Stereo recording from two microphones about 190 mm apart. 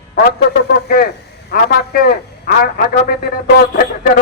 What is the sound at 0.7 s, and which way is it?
A man's voice, 50° left (ahead or behind).